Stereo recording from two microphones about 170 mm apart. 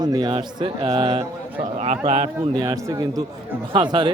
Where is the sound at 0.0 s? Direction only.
25° right (ahead or behind).